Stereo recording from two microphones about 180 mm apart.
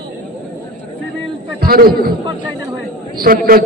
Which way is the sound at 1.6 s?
55° right (ahead or behind).